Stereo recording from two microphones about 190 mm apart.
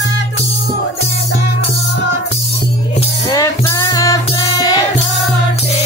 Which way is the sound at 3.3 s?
15° left (ahead or behind).